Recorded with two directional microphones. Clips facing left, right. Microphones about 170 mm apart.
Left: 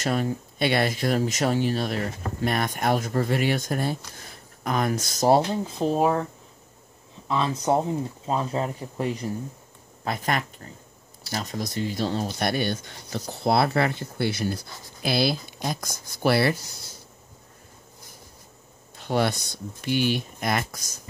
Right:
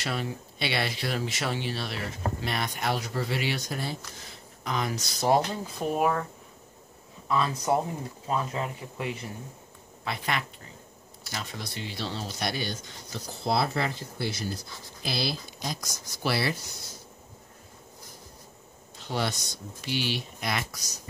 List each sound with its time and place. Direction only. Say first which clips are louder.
0.0 s speech: left 7 dB; 45° left (ahead or behind)
5.3 s speech: left 4 dB; 30° left (ahead or behind)
7.2 s speech: left 2 dB; 25° left (ahead or behind); by 16.5 s 55° left (ahead or behind)
18.9 s speech: left 7 dB; 55° left (ahead or behind)